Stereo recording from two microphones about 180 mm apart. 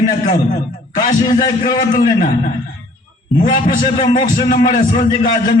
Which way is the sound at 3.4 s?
50° left (ahead or behind).